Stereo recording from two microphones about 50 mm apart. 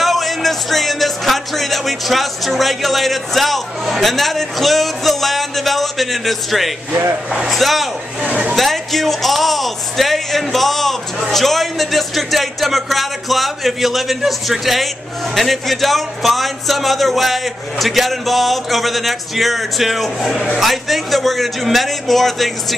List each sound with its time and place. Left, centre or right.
0.0 s a man's voice: centre
8.2 s a woman's voice: right
8.5 s a man's voice: centre